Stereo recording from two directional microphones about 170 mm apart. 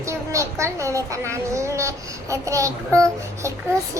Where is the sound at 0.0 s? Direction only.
15° right (ahead or behind).